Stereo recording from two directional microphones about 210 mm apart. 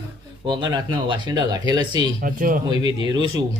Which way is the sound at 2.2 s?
40° right (ahead or behind).